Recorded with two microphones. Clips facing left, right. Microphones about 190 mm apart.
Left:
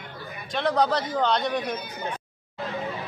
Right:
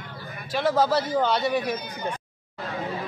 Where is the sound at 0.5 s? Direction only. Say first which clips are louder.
Right 1 dB; 5° right (ahead or behind).